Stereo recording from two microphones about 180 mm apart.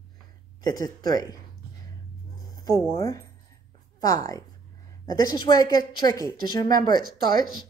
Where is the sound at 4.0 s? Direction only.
20° left (ahead or behind).